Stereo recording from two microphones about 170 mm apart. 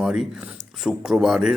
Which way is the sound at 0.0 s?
Centre (ahead or behind).